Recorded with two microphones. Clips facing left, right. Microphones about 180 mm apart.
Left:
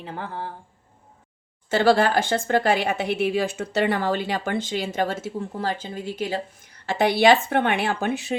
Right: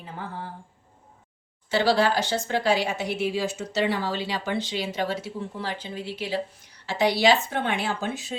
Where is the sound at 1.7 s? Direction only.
50° left (ahead or behind).